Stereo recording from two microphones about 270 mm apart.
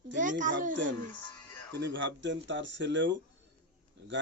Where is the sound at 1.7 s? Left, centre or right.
Right.